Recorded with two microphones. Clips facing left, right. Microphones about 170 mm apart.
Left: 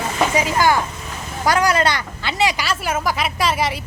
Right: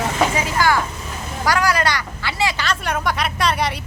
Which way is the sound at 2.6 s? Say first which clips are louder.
Left 1 dB; 5° left (ahead or behind).